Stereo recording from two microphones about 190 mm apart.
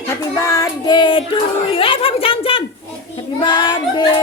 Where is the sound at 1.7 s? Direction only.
30° left (ahead or behind).